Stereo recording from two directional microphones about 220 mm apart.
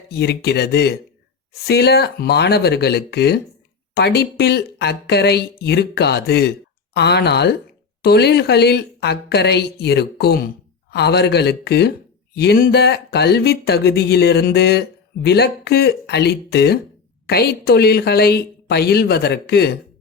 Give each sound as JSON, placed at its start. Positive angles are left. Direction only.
{"t": 0.1, "sound": "speech", "side_deg": 50}